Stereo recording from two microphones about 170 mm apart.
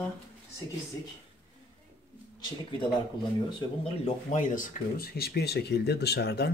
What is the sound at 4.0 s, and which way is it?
Speech, 45° left (ahead or behind).